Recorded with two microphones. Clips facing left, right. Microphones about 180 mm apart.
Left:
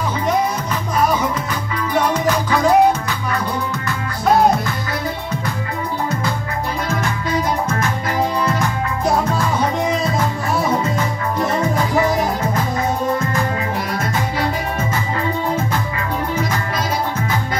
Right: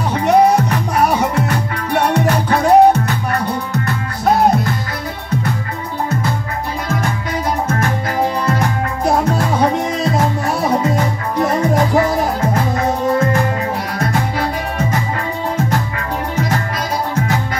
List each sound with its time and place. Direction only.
0.3 s music: 75° right (ahead or behind)